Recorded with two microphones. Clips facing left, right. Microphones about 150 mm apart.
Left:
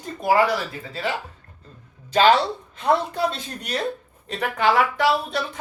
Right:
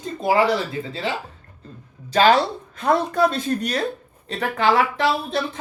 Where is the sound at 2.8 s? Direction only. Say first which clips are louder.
Right 3 dB; 45° right (ahead or behind).